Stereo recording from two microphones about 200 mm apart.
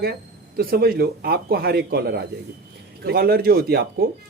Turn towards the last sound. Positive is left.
turn(degrees=-50)  # may be behind; listen again after turning